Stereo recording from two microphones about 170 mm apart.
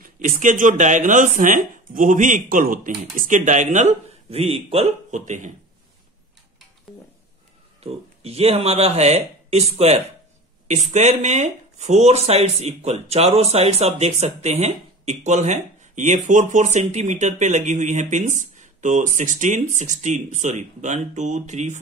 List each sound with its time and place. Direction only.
0.0 s speech: 50° right (ahead or behind)
7.8 s speech: 35° right (ahead or behind)
10.7 s speech: 45° right (ahead or behind)